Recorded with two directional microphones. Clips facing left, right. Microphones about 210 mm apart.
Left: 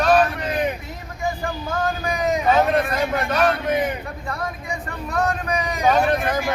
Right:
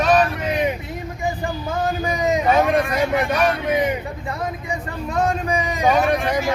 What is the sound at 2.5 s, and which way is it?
Vehicle, 10° right (ahead or behind).